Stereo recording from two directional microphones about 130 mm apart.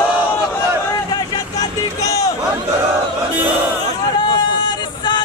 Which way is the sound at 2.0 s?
25° left (ahead or behind).